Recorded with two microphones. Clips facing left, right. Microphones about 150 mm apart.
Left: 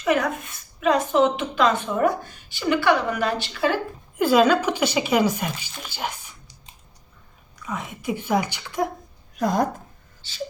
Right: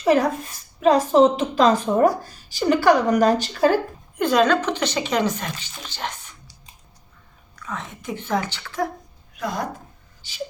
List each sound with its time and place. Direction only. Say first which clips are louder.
0.0 s a woman's voice: right 4 dB; 35° right (ahead or behind)
4.2 s a woman's voice: left 1 dB; 5° left (ahead or behind)
7.5 s a woman's voice: left 1 dB; 10° left (ahead or behind)
9.4 s speech: left 6 dB; 45° left (ahead or behind)